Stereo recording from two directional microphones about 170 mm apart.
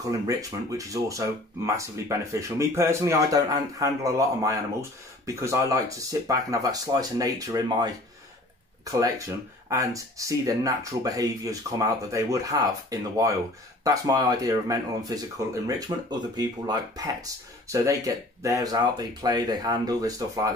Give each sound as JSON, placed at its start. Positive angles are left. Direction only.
{"t": 0.3, "sound": "speech", "side_deg": -20}
{"t": 9.7, "sound": "speech", "side_deg": -20}